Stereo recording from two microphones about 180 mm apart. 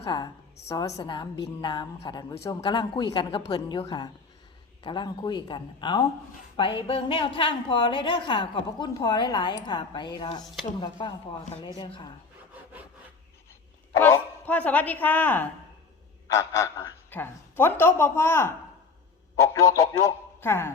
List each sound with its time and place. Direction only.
0.0 s a woman's voice: 25° left (ahead or behind)
13.9 s a woman's voice: 15° left (ahead or behind)